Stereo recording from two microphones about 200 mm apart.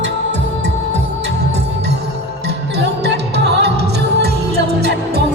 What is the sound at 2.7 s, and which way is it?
Music, 55° right (ahead or behind).